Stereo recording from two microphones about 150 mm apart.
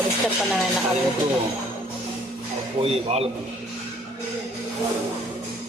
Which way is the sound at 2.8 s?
40° right (ahead or behind).